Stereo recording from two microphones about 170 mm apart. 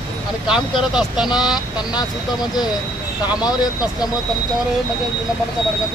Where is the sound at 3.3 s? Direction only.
25° left (ahead or behind).